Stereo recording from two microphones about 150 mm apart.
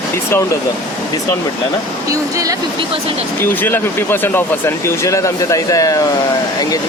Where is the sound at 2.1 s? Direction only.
20° right (ahead or behind).